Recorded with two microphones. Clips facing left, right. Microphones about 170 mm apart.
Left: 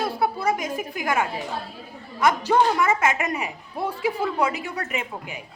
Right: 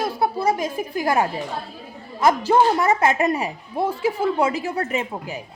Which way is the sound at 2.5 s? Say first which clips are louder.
Right 2 dB; 35° right (ahead or behind).